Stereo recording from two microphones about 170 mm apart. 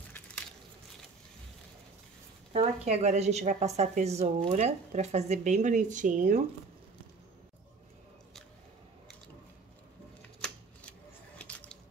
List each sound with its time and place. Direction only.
2.5 s a woman's voice: 40° right (ahead or behind)
10.4 s typewriter: 5° left (ahead or behind)